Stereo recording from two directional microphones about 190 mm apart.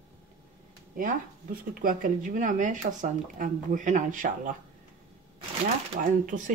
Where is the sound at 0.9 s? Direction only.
45° right (ahead or behind).